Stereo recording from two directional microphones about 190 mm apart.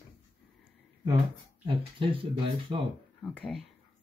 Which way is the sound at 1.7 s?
25° right (ahead or behind).